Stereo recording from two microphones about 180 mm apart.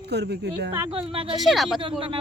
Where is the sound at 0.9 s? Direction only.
30° right (ahead or behind).